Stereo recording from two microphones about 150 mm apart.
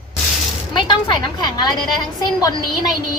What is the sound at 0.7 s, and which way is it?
A woman's voice, 30° left (ahead or behind).